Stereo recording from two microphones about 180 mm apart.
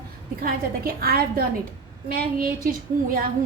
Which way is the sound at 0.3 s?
55° right (ahead or behind).